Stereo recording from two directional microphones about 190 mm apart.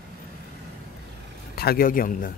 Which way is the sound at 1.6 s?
50° left (ahead or behind).